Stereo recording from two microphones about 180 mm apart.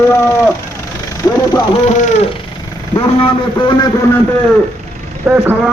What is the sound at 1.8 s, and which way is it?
Speech, 40° left (ahead or behind).